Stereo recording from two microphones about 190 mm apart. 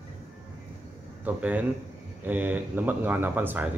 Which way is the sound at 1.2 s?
10° right (ahead or behind).